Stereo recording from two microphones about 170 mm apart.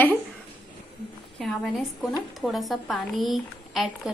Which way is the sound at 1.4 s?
Centre (ahead or behind).